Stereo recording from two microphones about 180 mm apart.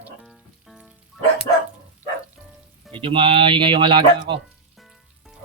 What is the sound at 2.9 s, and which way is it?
Speech, 30° right (ahead or behind).